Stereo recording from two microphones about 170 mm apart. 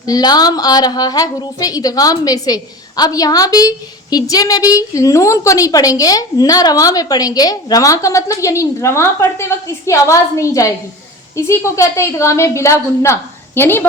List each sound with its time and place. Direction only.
0.0 s a woman's voice: 25° left (ahead or behind)